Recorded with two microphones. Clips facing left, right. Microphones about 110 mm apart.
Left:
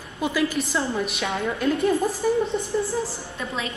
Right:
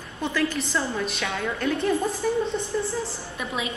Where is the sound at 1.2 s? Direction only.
30° left (ahead or behind).